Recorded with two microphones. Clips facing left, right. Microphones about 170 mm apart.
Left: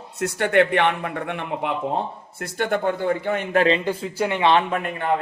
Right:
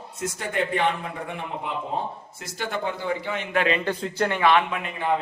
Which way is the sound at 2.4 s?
60° left (ahead or behind).